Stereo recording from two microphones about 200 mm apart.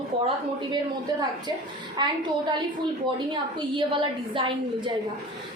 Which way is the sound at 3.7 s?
25° right (ahead or behind).